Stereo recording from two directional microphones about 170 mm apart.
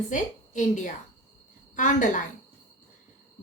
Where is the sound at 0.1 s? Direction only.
45° left (ahead or behind).